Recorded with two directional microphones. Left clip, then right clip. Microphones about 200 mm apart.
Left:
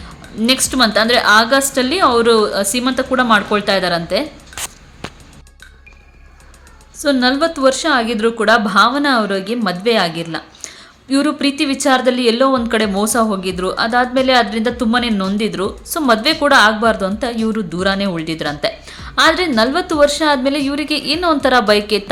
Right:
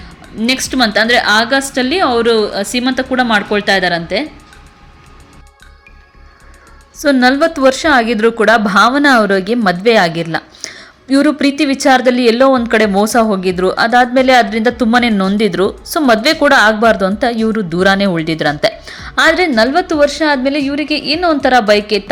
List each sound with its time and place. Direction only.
0.3 s a woman's voice: 10° right (ahead or behind)
7.0 s a woman's voice: 25° right (ahead or behind)